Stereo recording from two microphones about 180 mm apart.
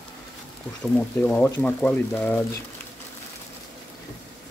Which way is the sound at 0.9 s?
5° left (ahead or behind).